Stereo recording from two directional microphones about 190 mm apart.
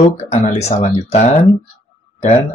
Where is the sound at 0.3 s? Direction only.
35° left (ahead or behind).